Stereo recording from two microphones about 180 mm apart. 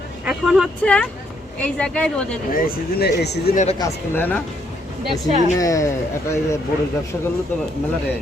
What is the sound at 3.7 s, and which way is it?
Speech, 15° left (ahead or behind).